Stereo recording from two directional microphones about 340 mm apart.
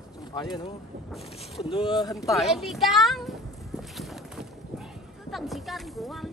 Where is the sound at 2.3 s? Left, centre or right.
Centre.